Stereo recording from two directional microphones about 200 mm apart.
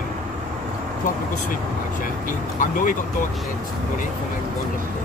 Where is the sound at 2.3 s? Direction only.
40° left (ahead or behind).